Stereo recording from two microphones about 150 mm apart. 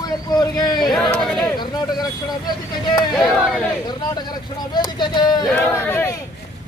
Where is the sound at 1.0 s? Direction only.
5° left (ahead or behind).